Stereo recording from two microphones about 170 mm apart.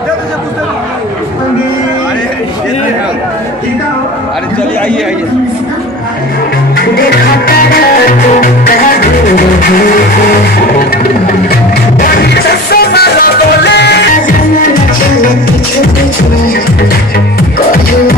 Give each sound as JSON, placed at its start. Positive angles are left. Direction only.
{"t": 8.4, "sound": "music", "side_deg": 60}
{"t": 11.4, "sound": "music", "side_deg": 65}